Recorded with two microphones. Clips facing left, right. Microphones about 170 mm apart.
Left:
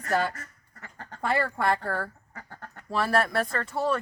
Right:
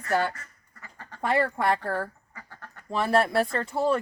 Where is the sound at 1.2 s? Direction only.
15° right (ahead or behind).